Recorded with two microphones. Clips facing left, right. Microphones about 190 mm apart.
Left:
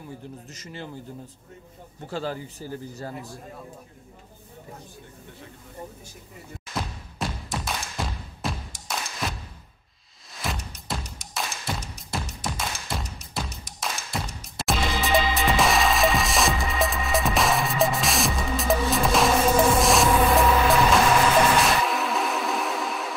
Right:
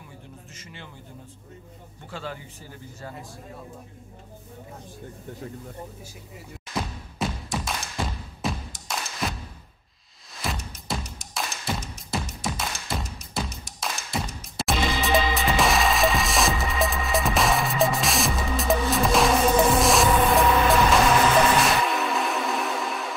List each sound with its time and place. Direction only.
0.6 s speech: 40° left (ahead or behind)
2.0 s speech: 40° left (ahead or behind)
6.7 s music: centre (ahead or behind)
10.4 s music: centre (ahead or behind)
21.6 s music: centre (ahead or behind)